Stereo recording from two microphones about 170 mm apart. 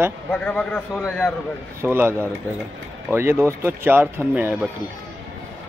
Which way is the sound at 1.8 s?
15° right (ahead or behind).